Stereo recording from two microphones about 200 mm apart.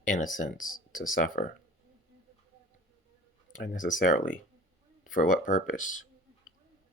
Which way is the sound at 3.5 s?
40° left (ahead or behind).